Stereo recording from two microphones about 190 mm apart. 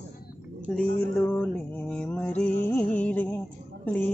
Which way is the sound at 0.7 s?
5° left (ahead or behind).